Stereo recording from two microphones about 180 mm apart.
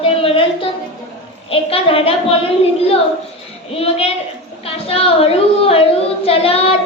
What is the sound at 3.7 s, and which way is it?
Speech, 35° left (ahead or behind).